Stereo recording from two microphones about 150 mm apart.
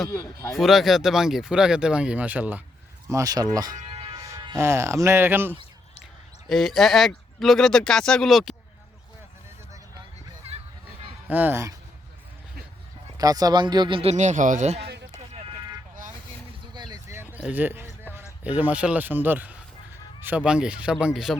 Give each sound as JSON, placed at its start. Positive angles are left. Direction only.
{"t": 0.1, "sound": "speech", "side_deg": 20}
{"t": 0.5, "sound": "speech", "side_deg": 0}
{"t": 3.1, "sound": "speech", "side_deg": -20}
{"t": 3.8, "sound": "music", "side_deg": -35}
{"t": 4.2, "sound": "speech", "side_deg": -25}
{"t": 6.5, "sound": "speech", "side_deg": 0}
{"t": 10.5, "sound": "a sound", "side_deg": -45}
{"t": 11.3, "sound": "speech", "side_deg": -10}
{"t": 13.1, "sound": "speech", "side_deg": -25}
{"t": 16.7, "sound": "a sound", "side_deg": -30}
{"t": 17.5, "sound": "speech", "side_deg": -15}